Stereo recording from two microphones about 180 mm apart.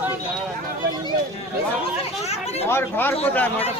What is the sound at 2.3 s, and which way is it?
Speech, 35° left (ahead or behind).